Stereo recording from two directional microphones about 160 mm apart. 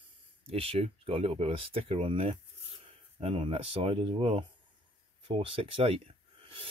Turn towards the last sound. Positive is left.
turn(degrees=-35)  # may be behind; listen again after turning